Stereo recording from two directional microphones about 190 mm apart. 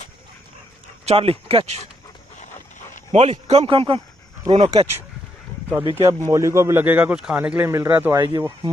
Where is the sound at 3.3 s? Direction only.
30° right (ahead or behind).